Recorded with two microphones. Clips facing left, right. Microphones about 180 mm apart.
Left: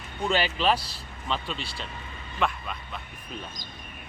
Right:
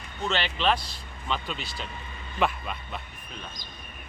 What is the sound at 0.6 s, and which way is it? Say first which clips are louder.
Speech: even; 40° left (ahead or behind).